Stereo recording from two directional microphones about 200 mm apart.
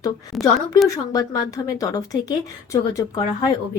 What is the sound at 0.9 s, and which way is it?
Speech, 20° left (ahead or behind).